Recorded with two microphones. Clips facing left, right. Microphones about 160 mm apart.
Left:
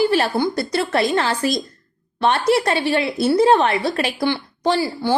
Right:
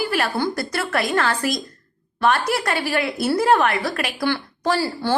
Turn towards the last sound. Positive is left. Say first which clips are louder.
# left 2 dB
turn(degrees=15)  # may be behind; listen again after turning